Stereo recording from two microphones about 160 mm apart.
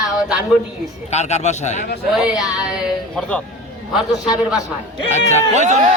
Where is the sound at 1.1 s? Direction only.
45° left (ahead or behind).